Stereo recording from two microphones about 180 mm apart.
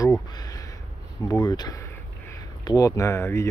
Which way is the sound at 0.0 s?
20° left (ahead or behind).